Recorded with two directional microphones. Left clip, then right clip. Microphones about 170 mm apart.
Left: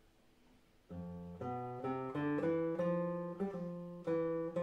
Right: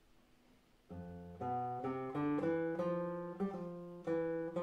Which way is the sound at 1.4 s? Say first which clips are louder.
Right 3 dB; 5° right (ahead or behind).